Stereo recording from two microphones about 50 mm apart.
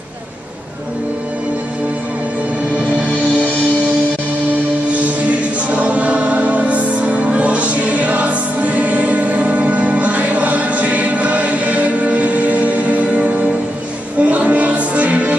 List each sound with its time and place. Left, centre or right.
5.7 s music: right